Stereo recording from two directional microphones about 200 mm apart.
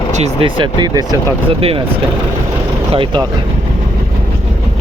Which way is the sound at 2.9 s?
25° right (ahead or behind).